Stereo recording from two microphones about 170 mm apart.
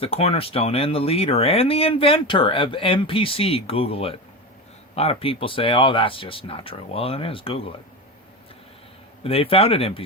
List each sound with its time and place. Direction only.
0.0 s speech: 35° left (ahead or behind)
9.2 s speech: 35° left (ahead or behind)